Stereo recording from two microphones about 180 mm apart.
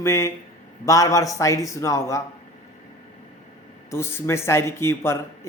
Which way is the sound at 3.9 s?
15° left (ahead or behind).